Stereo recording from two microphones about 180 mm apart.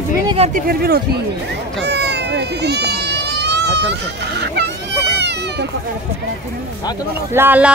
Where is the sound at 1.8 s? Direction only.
70° right (ahead or behind).